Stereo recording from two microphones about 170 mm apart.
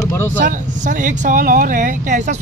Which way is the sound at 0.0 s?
15° left (ahead or behind).